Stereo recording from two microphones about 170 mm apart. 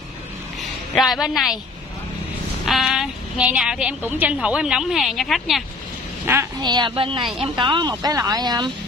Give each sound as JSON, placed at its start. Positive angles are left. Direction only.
{"t": 0.9, "sound": "a woman's voice", "side_deg": 0}
{"t": 2.6, "sound": "a woman's voice", "side_deg": 0}
{"t": 6.3, "sound": "a woman's voice", "side_deg": -15}
{"t": 6.6, "sound": "speech", "side_deg": -25}